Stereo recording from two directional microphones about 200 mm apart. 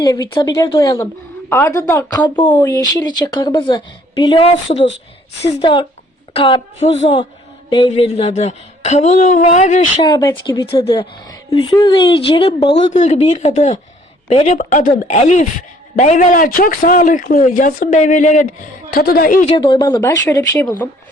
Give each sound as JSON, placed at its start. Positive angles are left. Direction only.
{"t": 0.0, "sound": "speech", "side_deg": 20}
{"t": 10.0, "sound": "speech", "side_deg": 20}
{"t": 19.5, "sound": "speech", "side_deg": 20}